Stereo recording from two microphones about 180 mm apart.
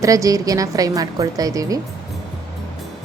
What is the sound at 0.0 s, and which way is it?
A woman's voice, 20° right (ahead or behind).